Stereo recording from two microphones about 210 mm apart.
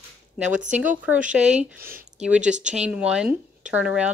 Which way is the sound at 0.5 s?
35° right (ahead or behind).